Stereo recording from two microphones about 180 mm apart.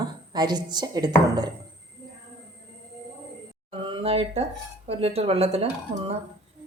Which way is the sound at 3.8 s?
30° right (ahead or behind).